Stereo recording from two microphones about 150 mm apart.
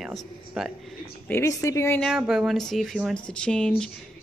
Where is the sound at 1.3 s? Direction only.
20° left (ahead or behind).